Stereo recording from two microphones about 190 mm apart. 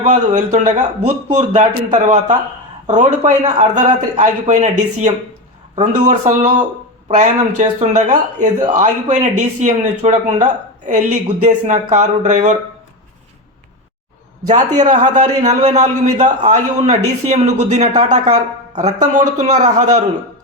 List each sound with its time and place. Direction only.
0.0 s speech: 40° right (ahead or behind)
14.4 s speech: 40° right (ahead or behind)